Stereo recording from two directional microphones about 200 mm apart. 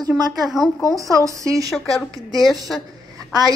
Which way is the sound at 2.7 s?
Centre (ahead or behind).